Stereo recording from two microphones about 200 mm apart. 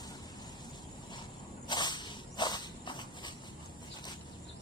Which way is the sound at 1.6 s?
20° left (ahead or behind).